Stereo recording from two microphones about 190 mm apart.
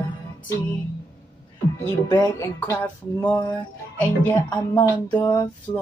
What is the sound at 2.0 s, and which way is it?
Speech, 20° left (ahead or behind).